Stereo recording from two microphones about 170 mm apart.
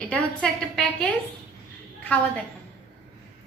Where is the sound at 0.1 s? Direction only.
5° left (ahead or behind).